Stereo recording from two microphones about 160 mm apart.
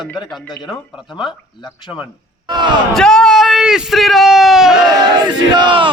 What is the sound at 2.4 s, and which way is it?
Speech, 25° right (ahead or behind).